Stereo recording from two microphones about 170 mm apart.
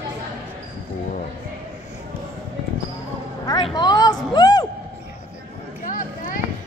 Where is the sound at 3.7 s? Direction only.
20° left (ahead or behind).